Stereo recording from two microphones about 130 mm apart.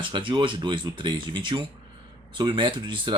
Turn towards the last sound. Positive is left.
turn(degrees=-35)  # may be behind; listen again after turning